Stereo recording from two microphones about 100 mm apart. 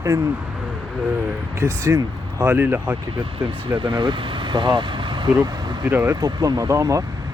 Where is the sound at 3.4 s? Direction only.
60° right (ahead or behind).